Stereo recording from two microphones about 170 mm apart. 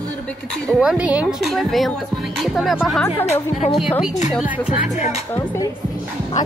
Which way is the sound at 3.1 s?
40° left (ahead or behind).